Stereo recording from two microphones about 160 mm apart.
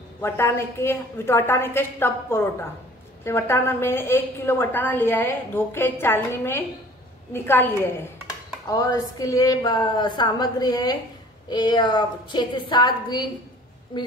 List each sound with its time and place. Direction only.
0.2 s a woman's voice: 15° left (ahead or behind)